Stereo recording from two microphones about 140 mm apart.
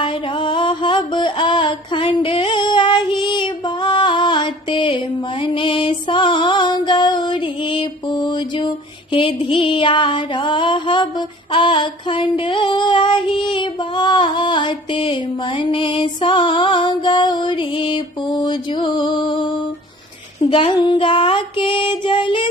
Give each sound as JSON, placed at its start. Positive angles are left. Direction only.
{"t": 0.0, "sound": "music", "side_deg": 35}